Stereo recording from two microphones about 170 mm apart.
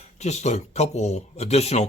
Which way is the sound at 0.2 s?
40° left (ahead or behind).